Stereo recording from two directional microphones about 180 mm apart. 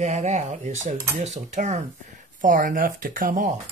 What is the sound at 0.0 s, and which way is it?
Speech, 40° right (ahead or behind).